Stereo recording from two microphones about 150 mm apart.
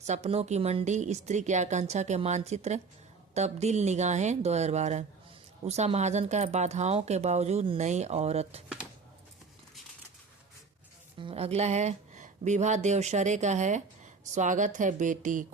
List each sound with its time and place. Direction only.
0.0 s speech: 50° right (ahead or behind)
11.2 s speech: 40° right (ahead or behind); by 15.4 s 60° right (ahead or behind)